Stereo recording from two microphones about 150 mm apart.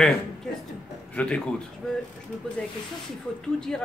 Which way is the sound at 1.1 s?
5° left (ahead or behind).